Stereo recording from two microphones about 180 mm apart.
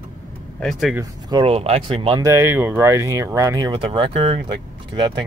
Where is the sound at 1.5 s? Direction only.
35° right (ahead or behind).